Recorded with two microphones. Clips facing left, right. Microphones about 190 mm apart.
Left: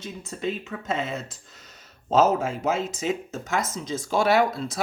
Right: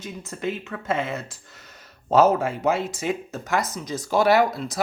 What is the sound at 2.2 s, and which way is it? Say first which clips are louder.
Speech: right 2 dB; 60° right (ahead or behind).